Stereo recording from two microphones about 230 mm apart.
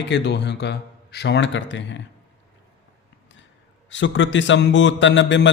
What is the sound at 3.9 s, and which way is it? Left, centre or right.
A man's voice, left.